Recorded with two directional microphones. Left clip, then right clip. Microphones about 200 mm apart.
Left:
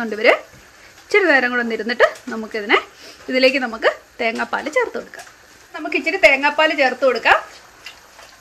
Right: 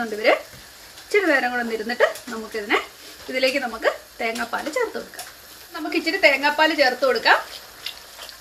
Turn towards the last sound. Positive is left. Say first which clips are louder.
# left 3 dB
turn(degrees=40)  # may be behind; listen again after turning